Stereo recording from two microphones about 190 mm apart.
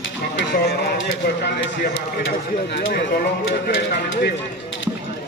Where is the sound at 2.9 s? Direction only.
65° left (ahead or behind).